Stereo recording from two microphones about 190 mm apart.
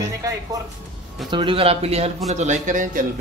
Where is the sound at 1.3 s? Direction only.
30° right (ahead or behind); by 3.0 s 45° right (ahead or behind).